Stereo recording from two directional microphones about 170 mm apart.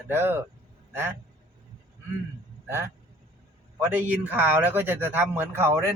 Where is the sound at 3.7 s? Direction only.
10° right (ahead or behind).